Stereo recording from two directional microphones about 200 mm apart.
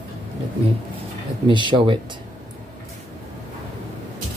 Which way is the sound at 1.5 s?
25° right (ahead or behind).